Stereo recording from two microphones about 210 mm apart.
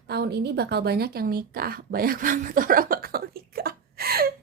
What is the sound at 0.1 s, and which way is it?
A woman's voice, 50° right (ahead or behind).